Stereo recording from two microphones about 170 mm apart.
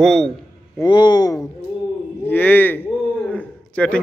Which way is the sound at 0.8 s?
25° left (ahead or behind).